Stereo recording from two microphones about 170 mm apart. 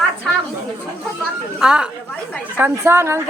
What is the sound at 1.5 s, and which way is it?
A woman's voice, 5° right (ahead or behind).